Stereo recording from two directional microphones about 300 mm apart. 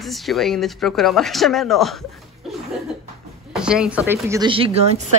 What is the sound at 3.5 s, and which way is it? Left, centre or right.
Speech, centre.